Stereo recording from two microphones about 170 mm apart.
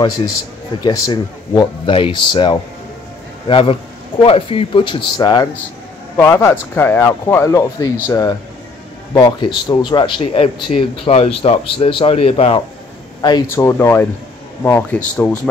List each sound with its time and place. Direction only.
0.8 s speech: 25° left (ahead or behind)
13.2 s speech: 25° left (ahead or behind); by 15.4 s 5° left (ahead or behind)